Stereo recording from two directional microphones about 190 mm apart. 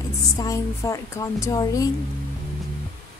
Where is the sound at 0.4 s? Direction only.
15° left (ahead or behind).